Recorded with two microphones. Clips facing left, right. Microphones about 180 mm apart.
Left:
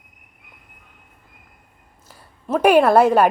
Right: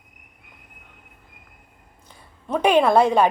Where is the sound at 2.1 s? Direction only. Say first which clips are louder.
Left 3 dB; 5° left (ahead or behind).